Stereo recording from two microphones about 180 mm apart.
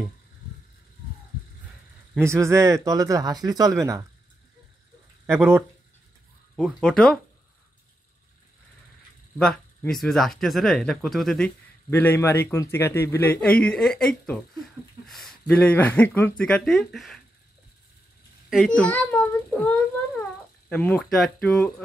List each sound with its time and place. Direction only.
2.1 s speech: 15° right (ahead or behind)
5.2 s speech: 15° right (ahead or behind)
6.5 s speech: centre (ahead or behind)
9.4 s speech: 5° left (ahead or behind)
18.8 s a child's voice: 10° left (ahead or behind)